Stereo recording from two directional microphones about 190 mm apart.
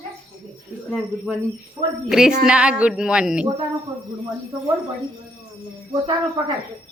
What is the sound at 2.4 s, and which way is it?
Speech, 5° right (ahead or behind).